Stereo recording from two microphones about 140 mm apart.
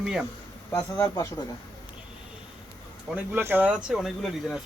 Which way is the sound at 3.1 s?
15° right (ahead or behind).